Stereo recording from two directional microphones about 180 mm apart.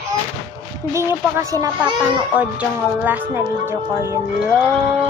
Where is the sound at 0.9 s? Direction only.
15° right (ahead or behind).